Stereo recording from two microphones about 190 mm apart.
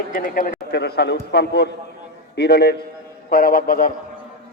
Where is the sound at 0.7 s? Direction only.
60° left (ahead or behind).